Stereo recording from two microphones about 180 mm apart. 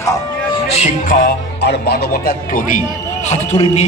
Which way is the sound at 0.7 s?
45° left (ahead or behind).